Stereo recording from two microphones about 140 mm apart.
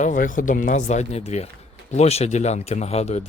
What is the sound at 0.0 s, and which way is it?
Speech, 65° left (ahead or behind).